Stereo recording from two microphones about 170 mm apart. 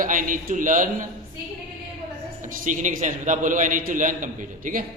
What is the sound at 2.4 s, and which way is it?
A man's voice, 50° right (ahead or behind).